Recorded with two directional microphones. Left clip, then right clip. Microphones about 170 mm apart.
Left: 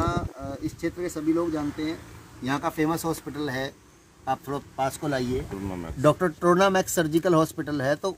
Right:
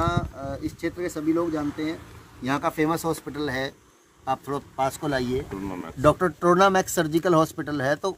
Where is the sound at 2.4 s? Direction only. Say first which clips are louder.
Right 2 dB; centre (ahead or behind).